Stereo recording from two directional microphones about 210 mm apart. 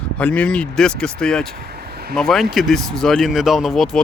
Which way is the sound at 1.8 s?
50° right (ahead or behind).